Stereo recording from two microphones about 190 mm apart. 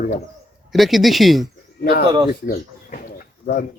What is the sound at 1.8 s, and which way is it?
Speech, 50° left (ahead or behind).